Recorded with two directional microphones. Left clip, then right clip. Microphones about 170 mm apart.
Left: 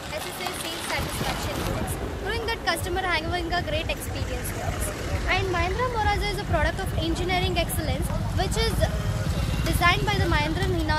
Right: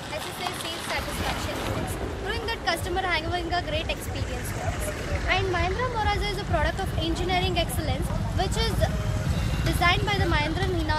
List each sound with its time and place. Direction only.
2.4 s speech: 15° left (ahead or behind)
5.3 s speech: 15° left (ahead or behind)